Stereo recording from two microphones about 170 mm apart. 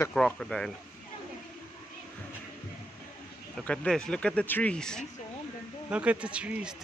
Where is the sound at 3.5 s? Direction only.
5° left (ahead or behind).